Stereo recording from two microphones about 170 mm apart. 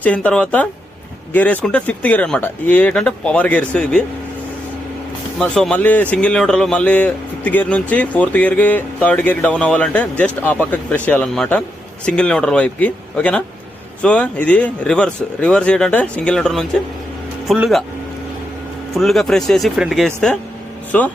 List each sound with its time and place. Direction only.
0.0 s a man's voice: 10° left (ahead or behind)
5.4 s a man's voice: 5° left (ahead or behind)
18.9 s a man's voice: centre (ahead or behind)